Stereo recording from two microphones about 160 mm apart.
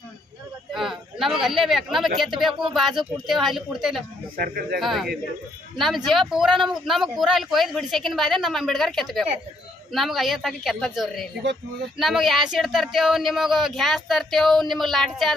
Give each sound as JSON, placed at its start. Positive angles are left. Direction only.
{"t": 0.7, "sound": "a woman's voice", "side_deg": 0}
{"t": 4.4, "sound": "speech", "side_deg": -70}
{"t": 4.8, "sound": "speech", "side_deg": 0}